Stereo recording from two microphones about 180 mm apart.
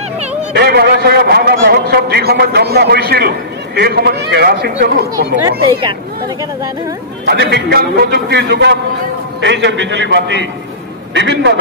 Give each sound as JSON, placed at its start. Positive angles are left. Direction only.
{"t": 0.5, "sound": "a man's voice", "side_deg": -65}
{"t": 5.8, "sound": "speech", "side_deg": -25}
{"t": 7.2, "sound": "a man's voice", "side_deg": -65}
{"t": 9.4, "sound": "a man's voice", "side_deg": -80}